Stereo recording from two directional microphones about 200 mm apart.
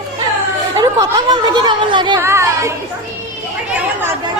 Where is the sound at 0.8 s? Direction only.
20° right (ahead or behind).